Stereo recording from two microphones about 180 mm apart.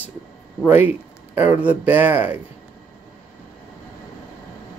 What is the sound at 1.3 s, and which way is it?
Speech, 10° right (ahead or behind).